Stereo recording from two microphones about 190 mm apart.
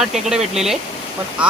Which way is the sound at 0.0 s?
5° right (ahead or behind).